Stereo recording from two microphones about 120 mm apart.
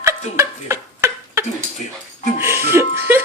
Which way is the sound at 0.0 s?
20° right (ahead or behind).